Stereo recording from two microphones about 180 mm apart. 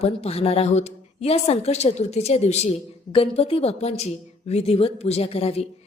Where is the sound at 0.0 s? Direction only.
35° left (ahead or behind).